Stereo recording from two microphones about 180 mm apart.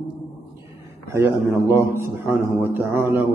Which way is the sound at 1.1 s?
15° right (ahead or behind).